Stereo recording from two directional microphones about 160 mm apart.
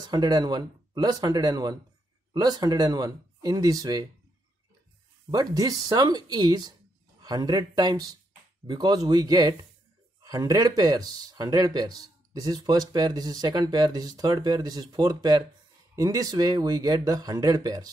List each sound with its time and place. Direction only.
0.0 s speech: 25° right (ahead or behind)
5.3 s speech: 25° right (ahead or behind)